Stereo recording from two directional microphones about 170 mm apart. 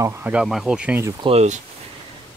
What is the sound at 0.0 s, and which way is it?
Speech, 15° right (ahead or behind).